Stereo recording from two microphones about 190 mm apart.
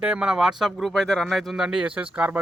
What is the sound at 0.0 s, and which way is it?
Speech, 5° right (ahead or behind).